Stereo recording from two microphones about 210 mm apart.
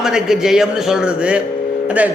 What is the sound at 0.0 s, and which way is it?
A man's voice, centre (ahead or behind).